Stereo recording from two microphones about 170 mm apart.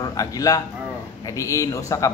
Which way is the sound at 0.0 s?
20° left (ahead or behind).